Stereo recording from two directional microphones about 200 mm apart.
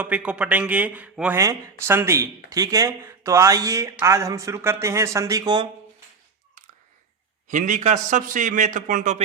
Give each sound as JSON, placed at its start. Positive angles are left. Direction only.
{"t": 0.0, "sound": "speech", "side_deg": -5}
{"t": 7.4, "sound": "a man's voice", "side_deg": -40}